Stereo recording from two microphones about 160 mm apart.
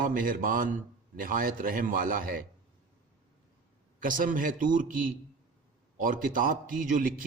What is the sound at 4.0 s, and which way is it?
A man's voice, 55° right (ahead or behind).